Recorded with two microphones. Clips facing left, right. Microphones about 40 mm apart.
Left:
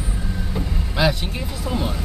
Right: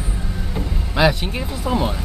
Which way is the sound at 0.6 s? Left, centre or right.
Centre.